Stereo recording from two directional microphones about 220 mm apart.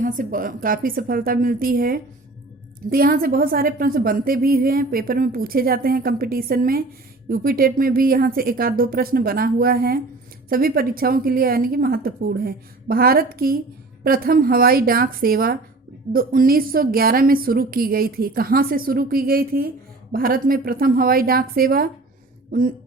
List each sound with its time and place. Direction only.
0.0 s a woman's voice: 35° right (ahead or behind)